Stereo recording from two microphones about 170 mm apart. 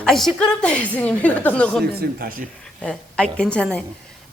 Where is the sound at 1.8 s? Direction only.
65° right (ahead or behind).